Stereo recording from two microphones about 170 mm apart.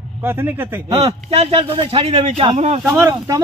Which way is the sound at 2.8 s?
15° right (ahead or behind).